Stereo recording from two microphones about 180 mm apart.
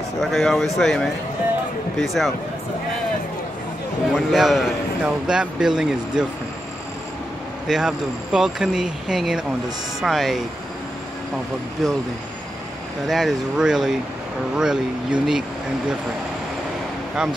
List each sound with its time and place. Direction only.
0.2 s speech: centre (ahead or behind)
4.3 s speech: centre (ahead or behind)
7.6 s speech: 5° right (ahead or behind)
11.8 s speech: centre (ahead or behind)
13.0 s speech: centre (ahead or behind)